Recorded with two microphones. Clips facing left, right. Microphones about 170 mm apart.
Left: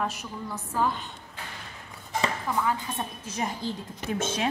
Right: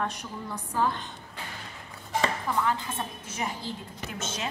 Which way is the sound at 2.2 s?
5° left (ahead or behind).